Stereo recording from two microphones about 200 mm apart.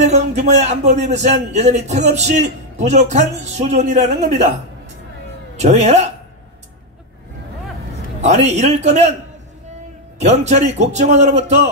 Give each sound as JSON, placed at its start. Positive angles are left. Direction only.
{"t": 0.0, "sound": "a man's voice", "side_deg": -35}
{"t": 5.6, "sound": "a man's voice", "side_deg": -35}
{"t": 8.2, "sound": "a man's voice", "side_deg": -35}
{"t": 10.1, "sound": "a man's voice", "side_deg": -35}